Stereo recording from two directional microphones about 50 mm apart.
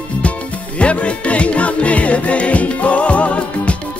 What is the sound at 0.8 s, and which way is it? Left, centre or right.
Music, left.